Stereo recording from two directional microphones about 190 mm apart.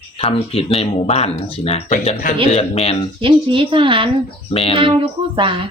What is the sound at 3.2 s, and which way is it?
Speech, 25° right (ahead or behind).